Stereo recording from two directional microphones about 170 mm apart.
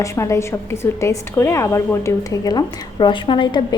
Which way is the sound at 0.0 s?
15° left (ahead or behind).